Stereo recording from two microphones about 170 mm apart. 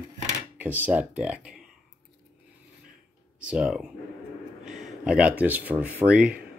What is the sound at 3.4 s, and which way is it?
Speech, 5° right (ahead or behind).